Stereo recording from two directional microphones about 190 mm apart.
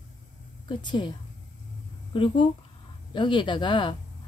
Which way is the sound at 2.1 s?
25° left (ahead or behind).